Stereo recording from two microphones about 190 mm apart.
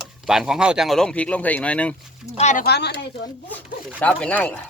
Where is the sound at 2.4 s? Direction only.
40° left (ahead or behind).